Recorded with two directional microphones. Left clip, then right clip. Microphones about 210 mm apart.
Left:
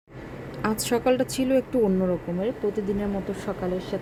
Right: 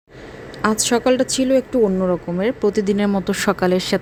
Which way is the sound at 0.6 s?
20° right (ahead or behind).